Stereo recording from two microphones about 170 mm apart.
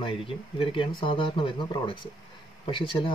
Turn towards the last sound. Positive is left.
turn(degrees=30)  # may be behind; listen again after turning